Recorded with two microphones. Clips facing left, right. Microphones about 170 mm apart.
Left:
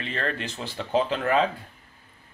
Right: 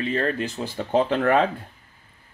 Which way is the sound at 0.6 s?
50° right (ahead or behind).